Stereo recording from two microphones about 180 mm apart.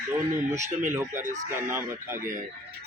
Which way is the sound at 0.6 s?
40° right (ahead or behind).